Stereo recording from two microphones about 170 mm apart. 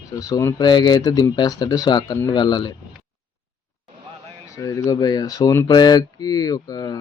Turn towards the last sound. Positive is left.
turn(degrees=25)  # may be behind; listen again after turning